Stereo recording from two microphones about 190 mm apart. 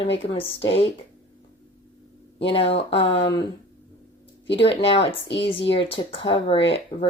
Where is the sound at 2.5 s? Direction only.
30° left (ahead or behind).